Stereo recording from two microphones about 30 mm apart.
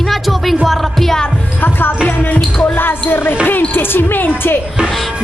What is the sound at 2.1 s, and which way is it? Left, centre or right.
Speech, left.